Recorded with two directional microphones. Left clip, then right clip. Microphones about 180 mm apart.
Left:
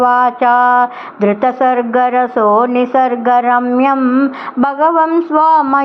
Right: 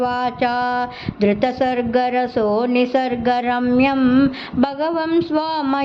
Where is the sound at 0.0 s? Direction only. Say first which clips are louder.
Left 9 dB; centre (ahead or behind).